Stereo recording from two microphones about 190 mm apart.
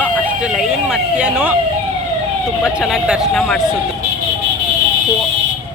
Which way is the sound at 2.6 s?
Centre (ahead or behind).